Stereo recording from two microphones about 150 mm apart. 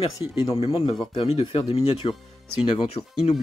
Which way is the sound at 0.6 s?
40° left (ahead or behind).